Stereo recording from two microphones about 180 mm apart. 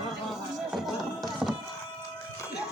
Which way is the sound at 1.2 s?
Centre (ahead or behind).